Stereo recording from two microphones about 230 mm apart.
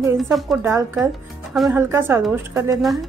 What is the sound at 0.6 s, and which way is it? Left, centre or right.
A woman's voice, centre.